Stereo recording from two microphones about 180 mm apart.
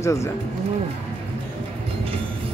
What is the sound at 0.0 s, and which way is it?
Speech, 15° left (ahead or behind).